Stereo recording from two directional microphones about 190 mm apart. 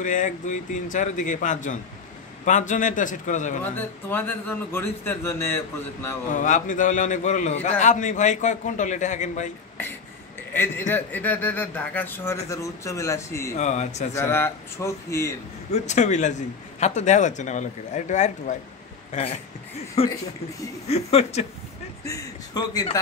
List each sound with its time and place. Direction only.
0.0 s a man's voice: 40° left (ahead or behind)
3.7 s a man's voice: 10° left (ahead or behind)
6.2 s a man's voice: 45° left (ahead or behind)
10.9 s a man's voice: 10° left (ahead or behind)
13.6 s a man's voice: 35° left (ahead or behind)
14.1 s a man's voice: 15° left (ahead or behind)
15.7 s a man's voice: 35° left (ahead or behind)
20.0 s a man's voice: 30° left (ahead or behind)
22.0 s a man's voice: 15° left (ahead or behind)